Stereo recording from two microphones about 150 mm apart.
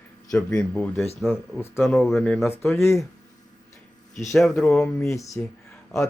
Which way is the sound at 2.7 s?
20° left (ahead or behind).